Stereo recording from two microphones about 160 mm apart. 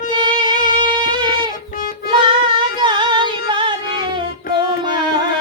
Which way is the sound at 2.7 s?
30° right (ahead or behind).